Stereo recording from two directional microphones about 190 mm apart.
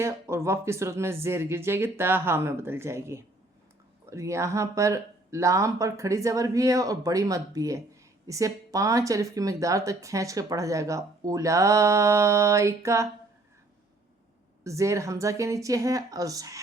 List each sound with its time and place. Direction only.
0.0 s speech: 15° right (ahead or behind)
14.6 s speech: 15° right (ahead or behind)